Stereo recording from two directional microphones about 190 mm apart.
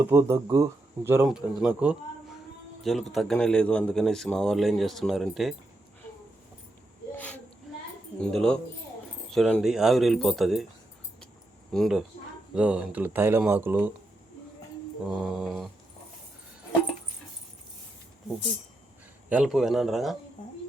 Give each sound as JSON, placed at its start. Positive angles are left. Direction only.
{"t": 0.0, "sound": "a man's voice", "side_deg": -15}
{"t": 8.2, "sound": "a man's voice", "side_deg": 5}
{"t": 11.7, "sound": "a man's voice", "side_deg": 0}
{"t": 15.1, "sound": "a man's voice", "side_deg": 0}
{"t": 19.3, "sound": "a man's voice", "side_deg": -5}